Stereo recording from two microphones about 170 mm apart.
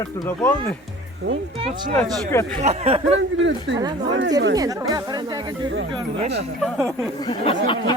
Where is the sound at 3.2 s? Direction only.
90° right.